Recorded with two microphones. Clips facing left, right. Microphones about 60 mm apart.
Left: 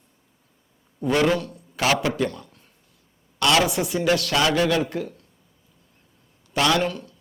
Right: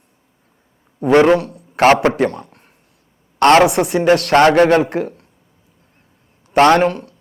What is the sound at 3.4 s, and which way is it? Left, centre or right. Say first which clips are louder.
Speech: right 10 dB; right.